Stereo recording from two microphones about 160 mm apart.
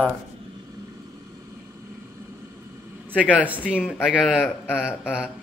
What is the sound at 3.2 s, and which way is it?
Speech, 10° right (ahead or behind).